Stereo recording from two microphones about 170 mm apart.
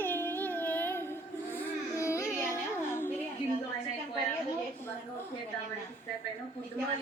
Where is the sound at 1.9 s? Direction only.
15° left (ahead or behind).